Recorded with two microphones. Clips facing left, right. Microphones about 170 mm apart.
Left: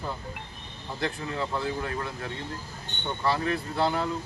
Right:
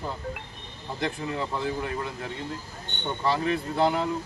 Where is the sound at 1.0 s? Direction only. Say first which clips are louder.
Right 1 dB; 15° right (ahead or behind).